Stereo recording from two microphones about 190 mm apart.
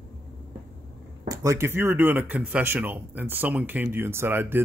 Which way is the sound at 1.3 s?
15° right (ahead or behind).